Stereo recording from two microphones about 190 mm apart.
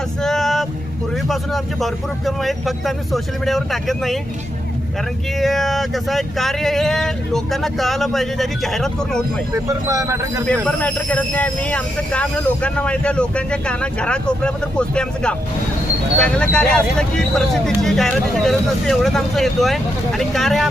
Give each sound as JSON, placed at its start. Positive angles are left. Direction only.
{"t": 0.2, "sound": "vehicle", "side_deg": 0}
{"t": 1.3, "sound": "speech", "side_deg": 0}
{"t": 5.4, "sound": "speech", "side_deg": 0}
{"t": 9.6, "sound": "a man's voice", "side_deg": -15}
{"t": 10.4, "sound": "speech", "side_deg": 5}